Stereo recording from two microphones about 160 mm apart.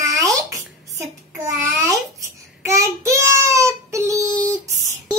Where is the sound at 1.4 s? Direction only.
20° right (ahead or behind).